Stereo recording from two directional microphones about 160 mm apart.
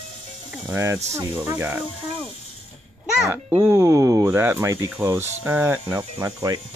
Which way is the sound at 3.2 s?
15° right (ahead or behind).